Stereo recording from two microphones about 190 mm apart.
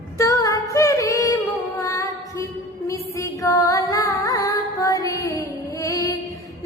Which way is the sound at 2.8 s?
15° left (ahead or behind).